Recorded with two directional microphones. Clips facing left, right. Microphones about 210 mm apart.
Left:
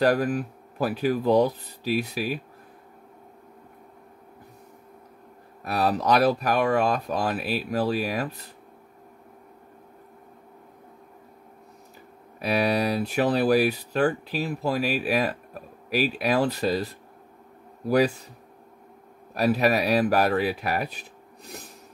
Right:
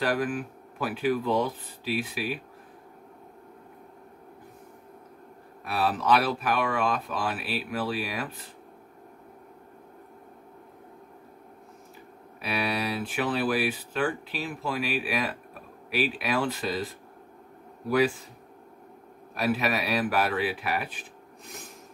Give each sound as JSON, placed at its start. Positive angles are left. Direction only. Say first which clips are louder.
{"t": 0.0, "sound": "speech", "louder": "left 5 dB", "side_deg": 40}
{"t": 5.6, "sound": "speech", "louder": "left 3 dB", "side_deg": 40}
{"t": 12.4, "sound": "speech", "louder": "left 6 dB", "side_deg": 40}
{"t": 19.3, "sound": "speech", "louder": "left 5 dB", "side_deg": 40}